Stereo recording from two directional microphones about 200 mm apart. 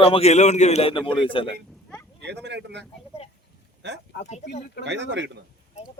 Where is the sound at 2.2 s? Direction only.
60° right (ahead or behind).